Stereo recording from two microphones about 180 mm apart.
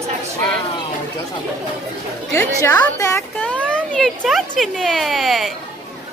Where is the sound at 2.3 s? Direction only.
15° left (ahead or behind).